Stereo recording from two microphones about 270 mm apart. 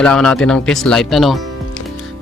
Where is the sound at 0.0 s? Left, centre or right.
Centre.